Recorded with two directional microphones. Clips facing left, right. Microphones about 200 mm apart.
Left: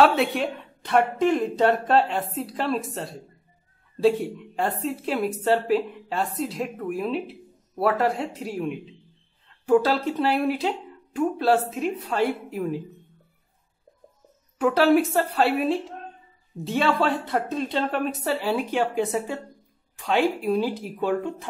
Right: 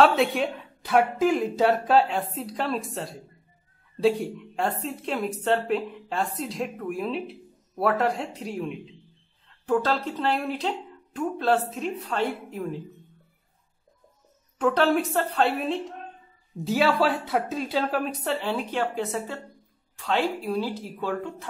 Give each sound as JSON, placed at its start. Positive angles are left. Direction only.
{"t": 0.0, "sound": "a woman's voice", "side_deg": 0}
{"t": 14.6, "sound": "a woman's voice", "side_deg": 5}